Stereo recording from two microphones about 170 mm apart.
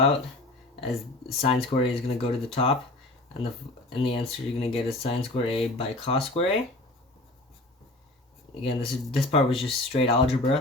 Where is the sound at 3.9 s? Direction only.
35° left (ahead or behind).